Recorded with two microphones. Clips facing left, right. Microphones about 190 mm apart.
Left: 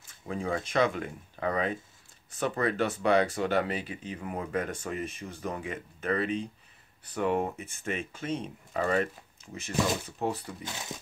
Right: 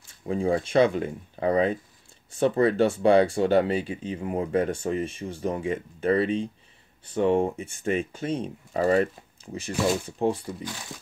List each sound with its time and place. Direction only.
0.3 s speech: 30° right (ahead or behind)